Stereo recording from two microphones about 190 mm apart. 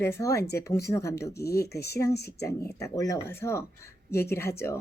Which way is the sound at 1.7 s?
60° left (ahead or behind).